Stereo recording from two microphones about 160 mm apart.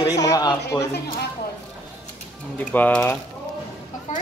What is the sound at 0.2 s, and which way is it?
Speech, 20° left (ahead or behind).